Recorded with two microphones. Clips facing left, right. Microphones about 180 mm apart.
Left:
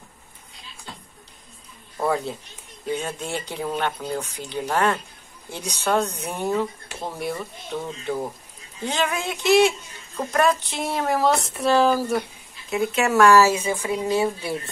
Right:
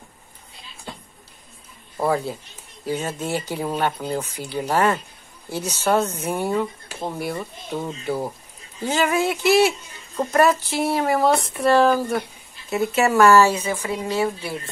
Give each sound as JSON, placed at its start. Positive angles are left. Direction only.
{"t": 2.0, "sound": "speech", "side_deg": 0}